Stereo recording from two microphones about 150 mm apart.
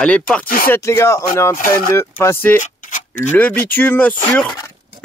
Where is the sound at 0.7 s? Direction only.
20° left (ahead or behind).